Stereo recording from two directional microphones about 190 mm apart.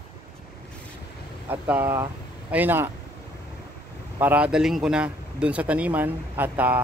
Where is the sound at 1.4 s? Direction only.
10° right (ahead or behind).